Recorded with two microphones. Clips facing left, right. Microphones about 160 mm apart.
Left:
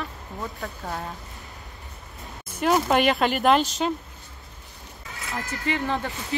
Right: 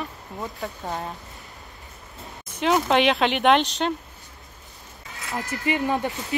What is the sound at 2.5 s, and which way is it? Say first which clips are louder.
Speech: right 1 dB; 5° left (ahead or behind).